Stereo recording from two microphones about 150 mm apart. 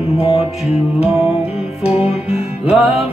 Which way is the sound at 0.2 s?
40° left (ahead or behind).